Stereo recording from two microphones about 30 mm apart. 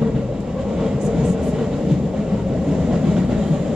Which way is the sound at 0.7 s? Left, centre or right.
Right.